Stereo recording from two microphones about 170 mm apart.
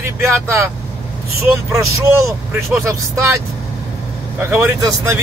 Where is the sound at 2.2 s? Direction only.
15° right (ahead or behind).